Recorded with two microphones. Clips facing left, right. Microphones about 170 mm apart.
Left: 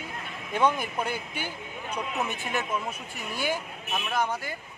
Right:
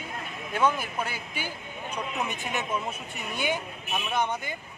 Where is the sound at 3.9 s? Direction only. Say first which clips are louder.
Even; centre (ahead or behind).